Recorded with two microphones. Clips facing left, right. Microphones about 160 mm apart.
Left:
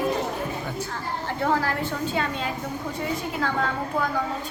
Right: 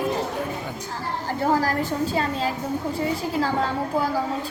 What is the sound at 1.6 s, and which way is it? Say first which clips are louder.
A woman's voice: right 3 dB; 40° right (ahead or behind).